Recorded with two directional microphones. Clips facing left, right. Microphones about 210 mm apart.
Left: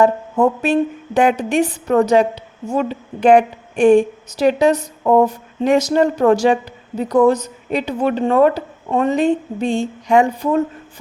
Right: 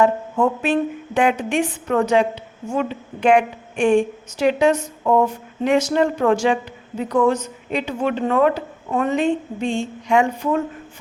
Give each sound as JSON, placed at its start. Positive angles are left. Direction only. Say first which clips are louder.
{"t": 0.0, "sound": "a woman's voice", "louder": "left 3 dB", "side_deg": 40}